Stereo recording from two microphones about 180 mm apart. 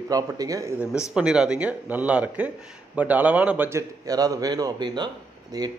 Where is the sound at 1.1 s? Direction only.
5° right (ahead or behind).